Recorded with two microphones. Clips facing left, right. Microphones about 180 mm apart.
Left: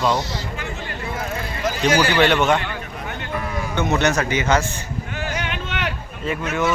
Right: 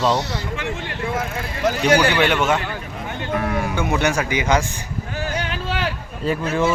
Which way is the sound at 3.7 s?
10° right (ahead or behind).